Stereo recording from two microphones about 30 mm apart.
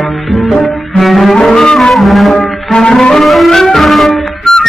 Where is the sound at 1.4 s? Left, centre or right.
Left.